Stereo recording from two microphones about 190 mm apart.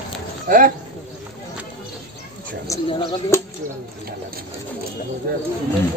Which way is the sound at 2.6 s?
15° left (ahead or behind).